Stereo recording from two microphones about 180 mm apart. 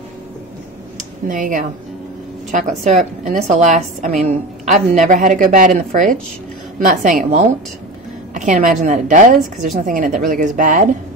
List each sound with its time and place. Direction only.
1.2 s a woman's voice: 45° right (ahead or behind)